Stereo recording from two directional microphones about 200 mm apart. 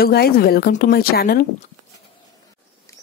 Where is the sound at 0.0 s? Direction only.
50° left (ahead or behind).